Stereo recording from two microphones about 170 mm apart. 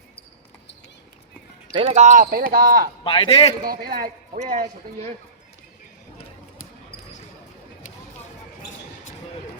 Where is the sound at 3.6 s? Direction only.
60° right (ahead or behind).